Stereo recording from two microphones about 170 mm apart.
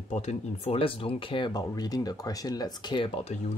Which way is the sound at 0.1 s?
40° left (ahead or behind).